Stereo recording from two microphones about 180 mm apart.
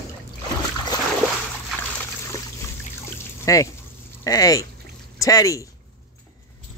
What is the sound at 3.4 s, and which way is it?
Speech, 20° left (ahead or behind).